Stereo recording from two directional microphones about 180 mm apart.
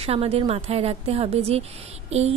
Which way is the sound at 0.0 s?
35° right (ahead or behind).